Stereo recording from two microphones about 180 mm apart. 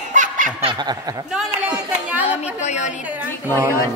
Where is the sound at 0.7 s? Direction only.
25° right (ahead or behind).